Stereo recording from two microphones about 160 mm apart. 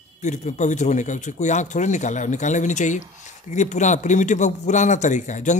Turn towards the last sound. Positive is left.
turn(degrees=50)  # may be behind; listen again after turning